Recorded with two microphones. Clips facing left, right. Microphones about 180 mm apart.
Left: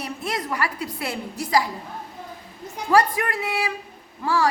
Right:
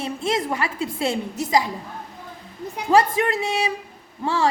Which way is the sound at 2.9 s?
25° right (ahead or behind).